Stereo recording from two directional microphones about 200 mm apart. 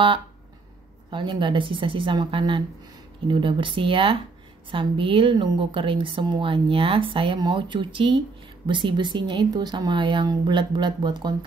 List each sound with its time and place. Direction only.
1.1 s a woman's voice: 25° right (ahead or behind)